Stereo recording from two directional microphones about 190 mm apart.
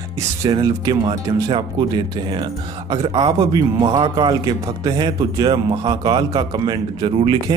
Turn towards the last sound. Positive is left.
turn(degrees=-25)  # may be behind; listen again after turning